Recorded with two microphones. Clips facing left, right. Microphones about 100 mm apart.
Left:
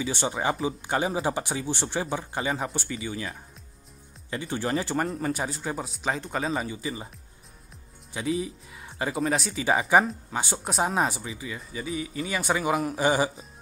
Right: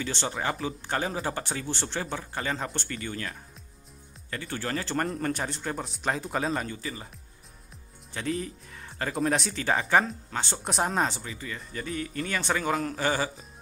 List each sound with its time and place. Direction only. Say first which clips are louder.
0.0 s speech: left 3 dB; 10° left (ahead or behind)
5.0 s speech: left 1 dB; 5° left (ahead or behind)
8.1 s speech: left 3 dB; 10° left (ahead or behind)